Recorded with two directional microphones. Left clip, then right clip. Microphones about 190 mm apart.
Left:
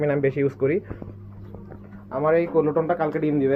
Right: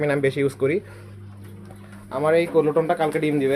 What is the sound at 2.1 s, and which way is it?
Speech, 15° right (ahead or behind).